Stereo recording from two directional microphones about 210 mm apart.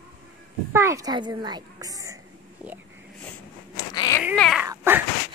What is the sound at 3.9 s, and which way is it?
Cat, 20° left (ahead or behind).